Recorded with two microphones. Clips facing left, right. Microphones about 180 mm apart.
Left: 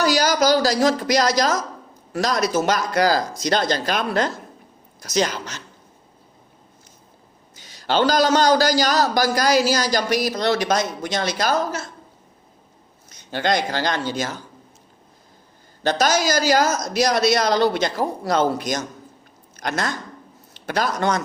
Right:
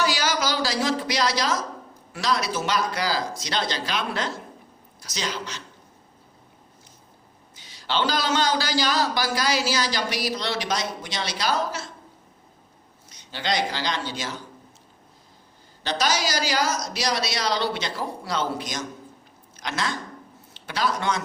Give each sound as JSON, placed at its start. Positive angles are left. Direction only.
{"t": 0.0, "sound": "a woman's voice", "side_deg": 40}
{"t": 7.5, "sound": "a man's voice", "side_deg": 45}
{"t": 13.1, "sound": "speech", "side_deg": 50}
{"t": 15.8, "sound": "a man's voice", "side_deg": 45}